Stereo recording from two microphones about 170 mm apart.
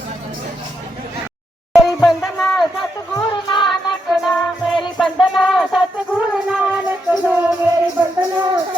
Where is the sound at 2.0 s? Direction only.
Centre (ahead or behind).